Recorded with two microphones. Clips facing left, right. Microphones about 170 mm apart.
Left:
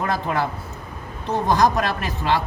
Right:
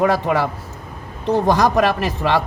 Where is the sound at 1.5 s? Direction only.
90° right.